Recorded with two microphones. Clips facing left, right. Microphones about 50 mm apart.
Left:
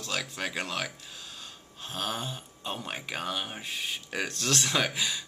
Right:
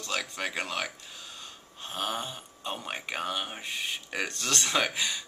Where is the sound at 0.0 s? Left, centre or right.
Centre.